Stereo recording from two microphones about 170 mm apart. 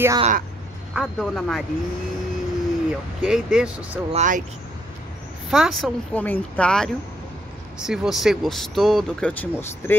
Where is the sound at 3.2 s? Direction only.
5° right (ahead or behind).